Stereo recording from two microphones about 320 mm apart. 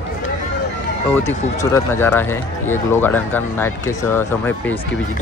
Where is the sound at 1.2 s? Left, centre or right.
Centre.